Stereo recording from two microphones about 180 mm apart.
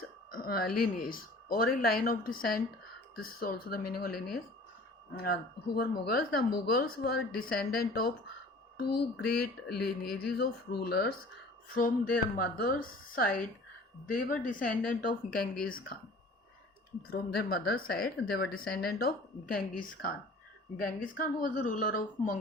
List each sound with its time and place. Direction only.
0.3 s a woman's voice: 55° left (ahead or behind)
14.4 s speech: 50° left (ahead or behind)
17.1 s a woman's voice: 60° left (ahead or behind)